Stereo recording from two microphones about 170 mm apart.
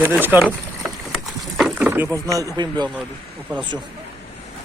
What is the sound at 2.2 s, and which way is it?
Speech, 20° right (ahead or behind).